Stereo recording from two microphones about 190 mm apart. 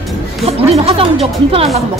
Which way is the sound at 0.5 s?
30° right (ahead or behind).